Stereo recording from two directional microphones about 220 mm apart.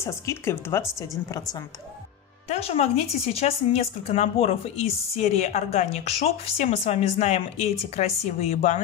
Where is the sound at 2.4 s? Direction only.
30° left (ahead or behind).